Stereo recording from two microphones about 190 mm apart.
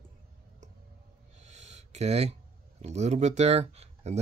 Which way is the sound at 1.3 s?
35° right (ahead or behind).